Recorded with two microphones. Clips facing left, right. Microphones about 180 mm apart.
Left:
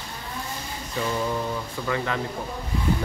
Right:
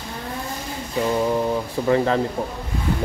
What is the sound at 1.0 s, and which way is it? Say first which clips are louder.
Speech: right 6 dB; 35° right (ahead or behind).